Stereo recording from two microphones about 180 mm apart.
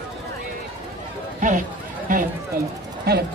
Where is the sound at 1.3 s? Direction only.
45° right (ahead or behind).